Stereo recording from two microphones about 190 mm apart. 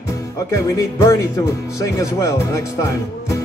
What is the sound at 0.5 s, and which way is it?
Speech, 15° left (ahead or behind).